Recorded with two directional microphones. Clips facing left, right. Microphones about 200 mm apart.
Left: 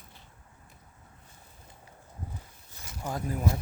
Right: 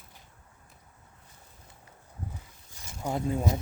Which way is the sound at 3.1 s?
25° right (ahead or behind).